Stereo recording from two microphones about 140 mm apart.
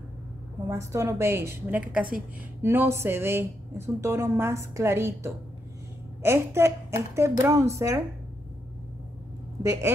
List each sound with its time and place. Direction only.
0.7 s a woman's voice: 20° right (ahead or behind)
9.6 s speech: 20° right (ahead or behind)